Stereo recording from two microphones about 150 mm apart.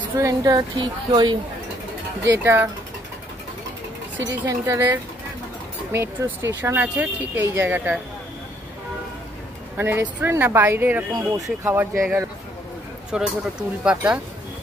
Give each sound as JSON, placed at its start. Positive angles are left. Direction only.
{"t": 0.1, "sound": "a woman's voice", "side_deg": -20}
{"t": 2.2, "sound": "speech", "side_deg": -15}
{"t": 4.5, "sound": "speech", "side_deg": -20}
{"t": 9.8, "sound": "speech", "side_deg": -15}
{"t": 11.1, "sound": "a woman's voice", "side_deg": -20}
{"t": 13.1, "sound": "speech", "side_deg": -5}